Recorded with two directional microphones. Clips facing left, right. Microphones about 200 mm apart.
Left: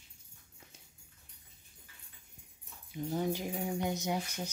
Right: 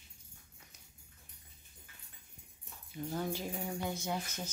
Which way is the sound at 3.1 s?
15° left (ahead or behind).